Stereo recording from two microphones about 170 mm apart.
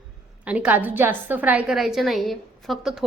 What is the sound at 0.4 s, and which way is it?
A woman's voice, 10° right (ahead or behind).